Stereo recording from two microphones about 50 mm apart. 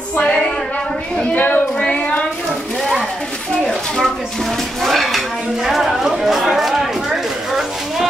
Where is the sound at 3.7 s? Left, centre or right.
Centre.